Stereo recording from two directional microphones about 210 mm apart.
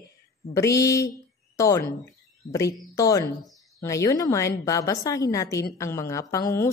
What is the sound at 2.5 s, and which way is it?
Speech, 15° left (ahead or behind).